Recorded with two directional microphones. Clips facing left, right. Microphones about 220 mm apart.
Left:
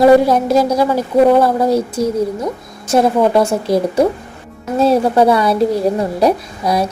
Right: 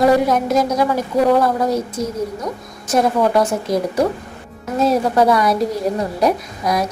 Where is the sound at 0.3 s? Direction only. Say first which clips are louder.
Left 4 dB; 30° left (ahead or behind).